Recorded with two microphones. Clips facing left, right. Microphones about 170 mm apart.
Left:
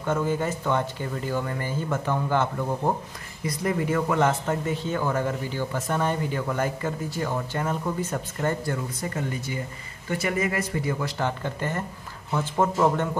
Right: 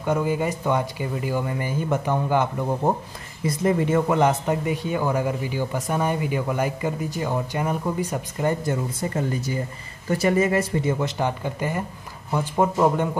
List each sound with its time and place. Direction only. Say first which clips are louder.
0.0 s speech: right 2 dB; 15° right (ahead or behind)
3.4 s speech: right 4 dB; 25° right (ahead or behind)
9.0 s speech: right 6 dB; 25° right (ahead or behind); by 13.2 s 10° right (ahead or behind)